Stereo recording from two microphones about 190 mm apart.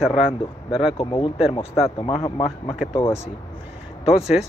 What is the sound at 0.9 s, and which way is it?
Speech, 25° left (ahead or behind).